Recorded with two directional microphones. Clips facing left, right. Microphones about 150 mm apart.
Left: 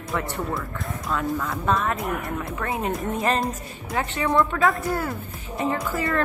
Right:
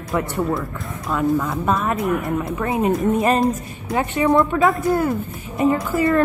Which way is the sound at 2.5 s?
25° right (ahead or behind).